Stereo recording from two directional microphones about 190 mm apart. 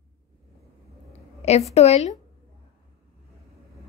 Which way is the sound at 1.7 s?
35° left (ahead or behind).